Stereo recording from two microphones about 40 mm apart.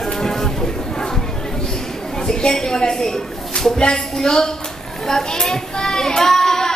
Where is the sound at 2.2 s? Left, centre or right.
Centre.